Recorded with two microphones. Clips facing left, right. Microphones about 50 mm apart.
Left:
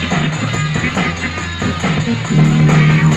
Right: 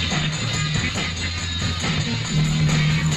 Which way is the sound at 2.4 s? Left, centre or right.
Left.